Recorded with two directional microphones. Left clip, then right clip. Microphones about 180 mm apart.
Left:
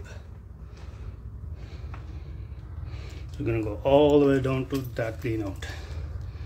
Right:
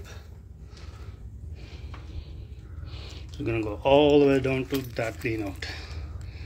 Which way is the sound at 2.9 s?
10° left (ahead or behind).